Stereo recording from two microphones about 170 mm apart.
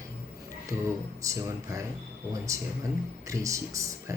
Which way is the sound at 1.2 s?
20° right (ahead or behind).